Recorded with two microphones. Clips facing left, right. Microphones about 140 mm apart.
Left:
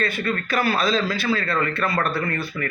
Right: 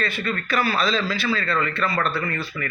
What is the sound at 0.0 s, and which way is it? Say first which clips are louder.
A man's voice: left 2 dB; 50° left (ahead or behind).